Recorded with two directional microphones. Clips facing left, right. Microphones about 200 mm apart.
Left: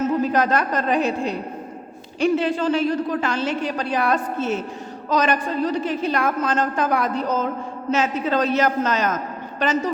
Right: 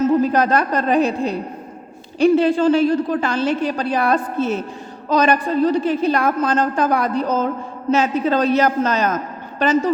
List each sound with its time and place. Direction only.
0.3 s a woman's voice: 35° right (ahead or behind)